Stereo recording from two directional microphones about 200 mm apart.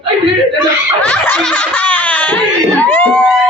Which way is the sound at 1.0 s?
10° left (ahead or behind).